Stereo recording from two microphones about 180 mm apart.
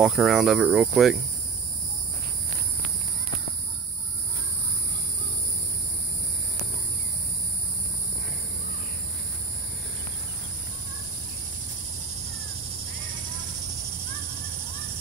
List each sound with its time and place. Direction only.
0.0 s speech: centre (ahead or behind)